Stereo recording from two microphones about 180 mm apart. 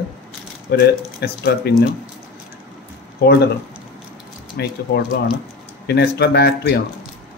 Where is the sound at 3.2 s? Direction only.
65° left (ahead or behind).